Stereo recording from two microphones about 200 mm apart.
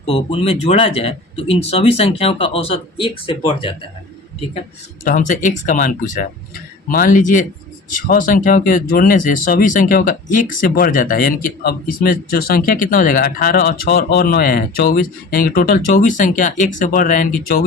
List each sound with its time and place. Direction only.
0.0 s speech: 30° left (ahead or behind)
5.0 s a man's voice: 40° left (ahead or behind)